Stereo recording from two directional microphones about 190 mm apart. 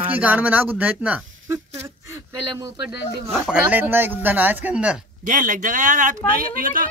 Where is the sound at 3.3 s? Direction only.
5° right (ahead or behind).